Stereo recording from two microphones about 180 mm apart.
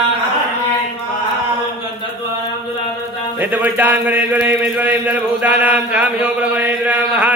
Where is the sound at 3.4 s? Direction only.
10° right (ahead or behind).